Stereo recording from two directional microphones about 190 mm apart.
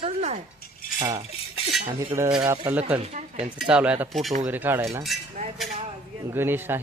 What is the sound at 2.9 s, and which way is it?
Speech, 30° right (ahead or behind).